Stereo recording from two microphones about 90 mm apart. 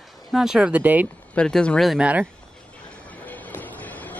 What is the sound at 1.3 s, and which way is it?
Speech, 10° left (ahead or behind).